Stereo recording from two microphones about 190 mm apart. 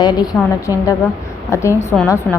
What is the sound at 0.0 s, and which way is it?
Speech, 20° left (ahead or behind).